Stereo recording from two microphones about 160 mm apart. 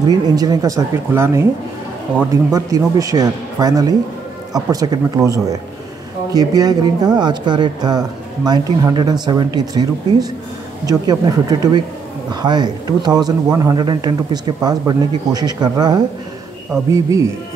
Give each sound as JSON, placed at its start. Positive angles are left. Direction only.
{"t": 0.0, "sound": "speech", "side_deg": -25}
{"t": 2.5, "sound": "speech", "side_deg": -20}
{"t": 10.9, "sound": "speech", "side_deg": -25}